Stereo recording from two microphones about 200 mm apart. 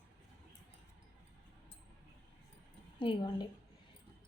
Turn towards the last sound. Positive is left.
turn(degrees=25)  # may be behind; listen again after turning